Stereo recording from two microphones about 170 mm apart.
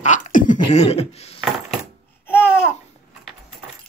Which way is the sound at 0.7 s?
40° left (ahead or behind).